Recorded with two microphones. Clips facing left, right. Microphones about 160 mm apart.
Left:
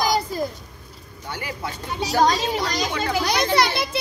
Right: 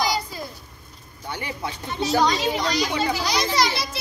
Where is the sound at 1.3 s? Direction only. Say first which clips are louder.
Even; 20° right (ahead or behind).